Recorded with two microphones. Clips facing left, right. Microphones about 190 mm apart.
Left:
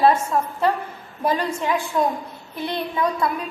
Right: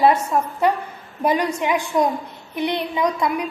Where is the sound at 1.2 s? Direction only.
15° right (ahead or behind).